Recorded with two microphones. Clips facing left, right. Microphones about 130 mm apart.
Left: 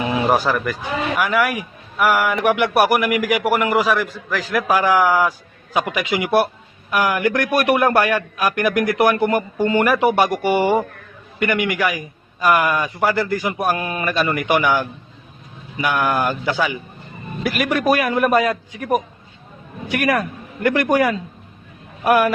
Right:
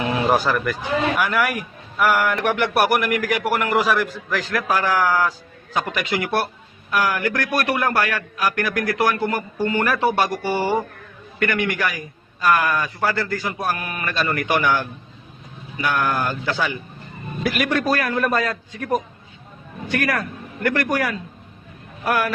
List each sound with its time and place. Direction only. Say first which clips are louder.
0.0 s speech: left 1 dB; 5° left (ahead or behind)
3.8 s speech: left 1 dB; centre (ahead or behind)
4.5 s a man's voice: left 5 dB; 10° left (ahead or behind)
14.1 s a man's voice: left 3 dB; 15° left (ahead or behind)
17.4 s a man's voice: left 1 dB; centre (ahead or behind)
17.7 s a man's voice: left 3 dB; 15° left (ahead or behind)